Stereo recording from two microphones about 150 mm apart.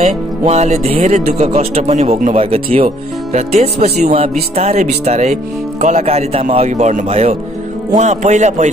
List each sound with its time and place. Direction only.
0.0 s speech: 45° right (ahead or behind)